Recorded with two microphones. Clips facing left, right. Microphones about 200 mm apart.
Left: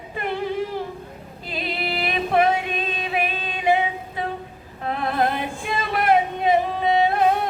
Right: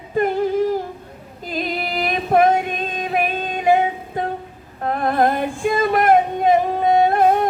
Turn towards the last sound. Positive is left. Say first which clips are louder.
# right 4 dB
turn(degrees=-50)  # may be behind; listen again after turning